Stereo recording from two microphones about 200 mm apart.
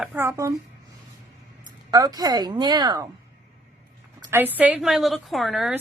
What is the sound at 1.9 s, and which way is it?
A woman's voice, 20° right (ahead or behind).